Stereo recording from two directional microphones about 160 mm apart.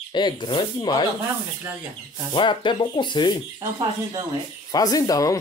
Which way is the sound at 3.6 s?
25° right (ahead or behind).